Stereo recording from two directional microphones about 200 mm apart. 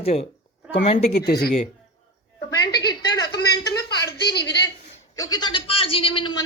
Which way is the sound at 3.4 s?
55° left (ahead or behind).